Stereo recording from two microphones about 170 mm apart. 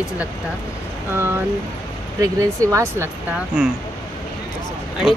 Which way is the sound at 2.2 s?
20° right (ahead or behind).